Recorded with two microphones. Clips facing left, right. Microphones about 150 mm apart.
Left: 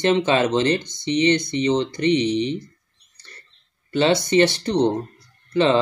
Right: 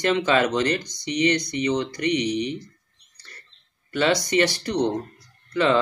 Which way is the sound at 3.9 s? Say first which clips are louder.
Left 3 dB; 25° left (ahead or behind).